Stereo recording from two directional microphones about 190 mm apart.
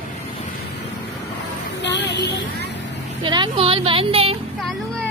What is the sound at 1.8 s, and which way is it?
Speech, 65° left (ahead or behind).